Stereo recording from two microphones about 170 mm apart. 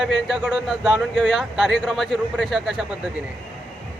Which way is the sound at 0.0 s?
Centre (ahead or behind).